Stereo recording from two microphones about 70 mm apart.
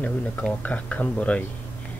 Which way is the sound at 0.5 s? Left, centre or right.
Left.